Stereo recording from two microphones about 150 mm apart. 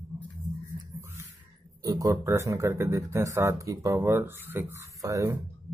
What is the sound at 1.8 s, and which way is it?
Speech, 25° right (ahead or behind).